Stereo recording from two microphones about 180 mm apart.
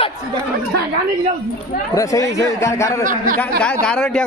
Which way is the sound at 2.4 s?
15° left (ahead or behind).